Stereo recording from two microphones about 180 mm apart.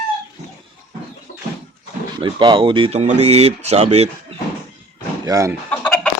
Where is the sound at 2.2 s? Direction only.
25° right (ahead or behind).